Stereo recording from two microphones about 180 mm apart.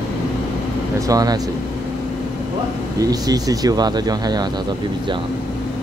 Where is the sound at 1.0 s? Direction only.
20° right (ahead or behind).